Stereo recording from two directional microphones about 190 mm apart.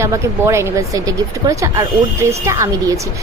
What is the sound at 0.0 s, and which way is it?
A woman's voice, 15° right (ahead or behind).